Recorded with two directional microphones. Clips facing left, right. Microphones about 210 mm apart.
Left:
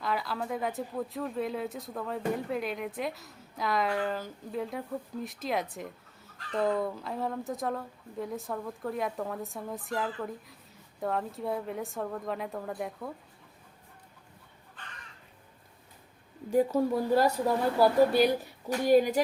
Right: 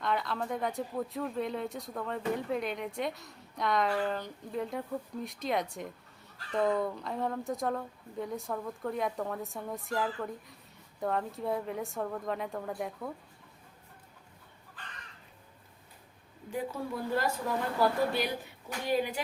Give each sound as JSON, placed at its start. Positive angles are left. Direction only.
{"t": 0.0, "sound": "speech", "side_deg": 5}
{"t": 16.5, "sound": "a woman's voice", "side_deg": 40}